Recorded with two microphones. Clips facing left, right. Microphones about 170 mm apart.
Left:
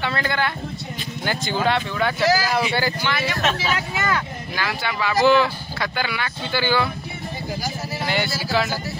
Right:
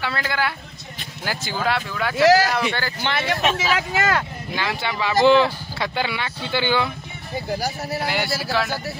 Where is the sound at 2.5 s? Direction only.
10° left (ahead or behind).